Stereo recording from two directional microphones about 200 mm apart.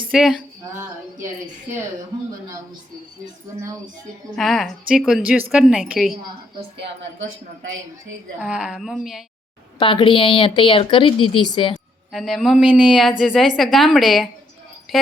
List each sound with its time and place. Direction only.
0.1 s a sound: centre (ahead or behind)
1.7 s speech: 10° right (ahead or behind)
4.4 s a woman's voice: centre (ahead or behind)
8.4 s a woman's voice: 5° right (ahead or behind)
9.7 s a woman's voice: 25° left (ahead or behind)
12.1 s a woman's voice: centre (ahead or behind)